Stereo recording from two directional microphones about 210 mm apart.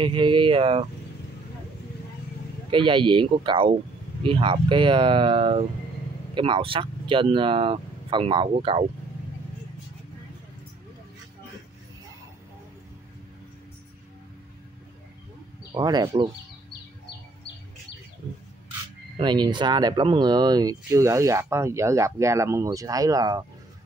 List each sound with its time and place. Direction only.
0.0 s speech: 25° right (ahead or behind)
2.7 s speech: 25° right (ahead or behind)
15.7 s speech: 20° right (ahead or behind)
19.1 s speech: 20° right (ahead or behind)